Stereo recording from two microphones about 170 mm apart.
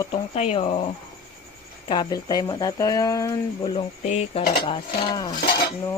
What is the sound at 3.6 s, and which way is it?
Speech, 35° left (ahead or behind).